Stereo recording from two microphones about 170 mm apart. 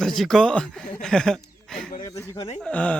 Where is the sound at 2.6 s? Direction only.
5° left (ahead or behind).